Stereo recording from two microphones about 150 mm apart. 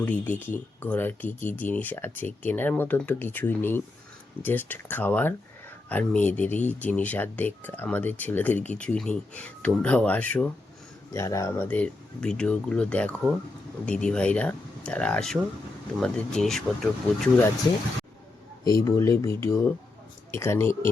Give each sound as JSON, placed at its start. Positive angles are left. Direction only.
{"t": 0.0, "sound": "speech", "side_deg": 10}
{"t": 11.1, "sound": "speech", "side_deg": 20}
{"t": 18.6, "sound": "speech", "side_deg": 20}